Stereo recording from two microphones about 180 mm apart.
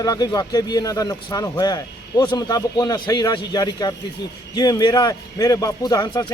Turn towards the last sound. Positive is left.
turn(degrees=20)  # may be behind; listen again after turning